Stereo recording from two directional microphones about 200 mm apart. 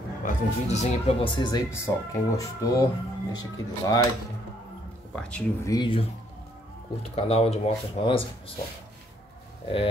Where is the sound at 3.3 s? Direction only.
20° left (ahead or behind).